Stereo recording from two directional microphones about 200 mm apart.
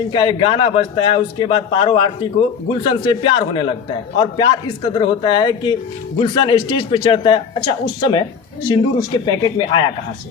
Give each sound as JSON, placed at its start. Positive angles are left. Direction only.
{"t": 0.1, "sound": "a man's voice", "side_deg": 25}
{"t": 8.7, "sound": "a man's voice", "side_deg": 20}